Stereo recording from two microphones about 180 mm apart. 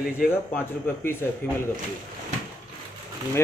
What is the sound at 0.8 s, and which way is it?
Speech, 10° left (ahead or behind).